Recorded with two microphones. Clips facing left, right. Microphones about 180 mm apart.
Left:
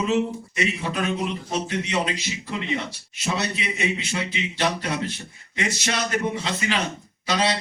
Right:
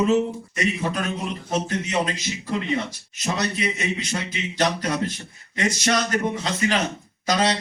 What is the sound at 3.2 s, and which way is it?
A man's voice, 45° right (ahead or behind).